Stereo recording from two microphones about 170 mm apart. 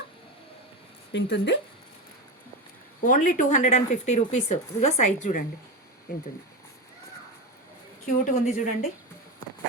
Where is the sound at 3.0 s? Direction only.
50° left (ahead or behind).